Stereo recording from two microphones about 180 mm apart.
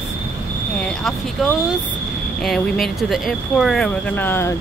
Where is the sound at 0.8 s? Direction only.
5° left (ahead or behind).